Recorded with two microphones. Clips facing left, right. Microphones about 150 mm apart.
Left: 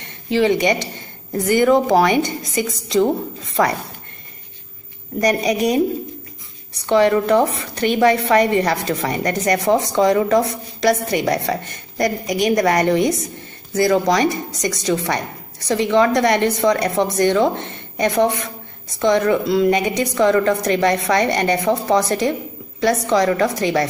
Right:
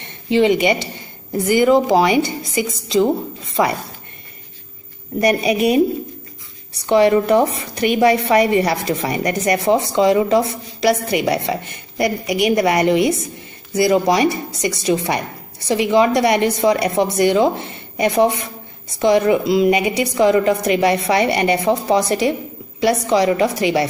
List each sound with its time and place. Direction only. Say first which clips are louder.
0.3 s speech: right 2 dB; 20° right (ahead or behind)
1.6 s a woman's voice: right 1 dB; 10° right (ahead or behind)
5.2 s a woman's voice: right 2 dB; 10° right (ahead or behind)
6.9 s a woman's voice: right 1 dB; 15° right (ahead or behind)